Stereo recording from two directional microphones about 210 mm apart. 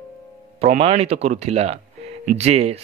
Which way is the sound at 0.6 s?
30° right (ahead or behind).